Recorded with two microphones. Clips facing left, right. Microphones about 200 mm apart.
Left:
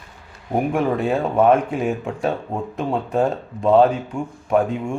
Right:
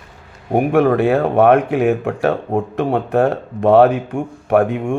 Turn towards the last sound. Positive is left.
turn(degrees=-65)  # may be behind; listen again after turning